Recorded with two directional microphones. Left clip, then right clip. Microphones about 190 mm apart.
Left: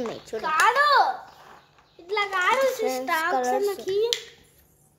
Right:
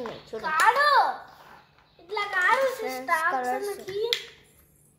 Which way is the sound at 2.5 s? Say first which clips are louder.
Left 2 dB; 35° left (ahead or behind).